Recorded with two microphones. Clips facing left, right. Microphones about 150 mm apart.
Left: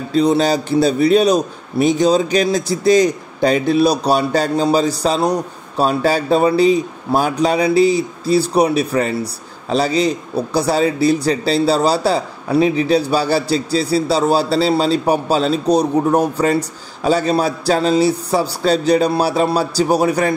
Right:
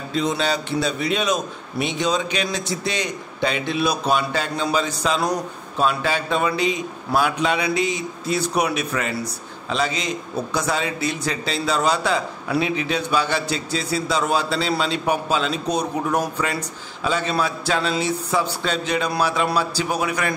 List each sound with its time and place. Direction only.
0.1 s a man's voice: 35° left (ahead or behind)